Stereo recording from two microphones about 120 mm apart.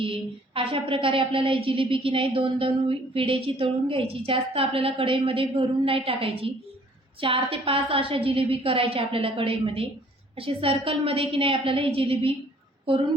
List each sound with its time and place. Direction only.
0.0 s a woman's voice: 50° right (ahead or behind)